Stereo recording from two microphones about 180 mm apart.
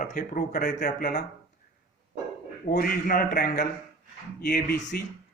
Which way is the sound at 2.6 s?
55° left (ahead or behind).